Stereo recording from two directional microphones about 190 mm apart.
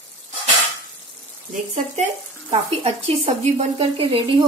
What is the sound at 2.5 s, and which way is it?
Speech, 30° right (ahead or behind).